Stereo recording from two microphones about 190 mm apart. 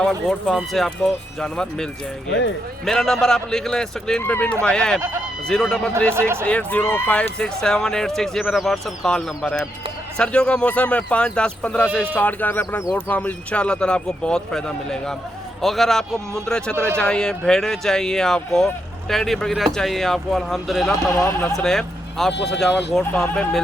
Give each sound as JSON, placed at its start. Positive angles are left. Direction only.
{"t": 0.0, "sound": "speech", "side_deg": 0}
{"t": 6.1, "sound": "speech", "side_deg": -15}
{"t": 6.4, "sound": "speech", "side_deg": 5}
{"t": 16.7, "sound": "speech", "side_deg": -10}
{"t": 17.0, "sound": "speech", "side_deg": 5}
{"t": 22.3, "sound": "speech", "side_deg": 65}
{"t": 23.0, "sound": "speech", "side_deg": 5}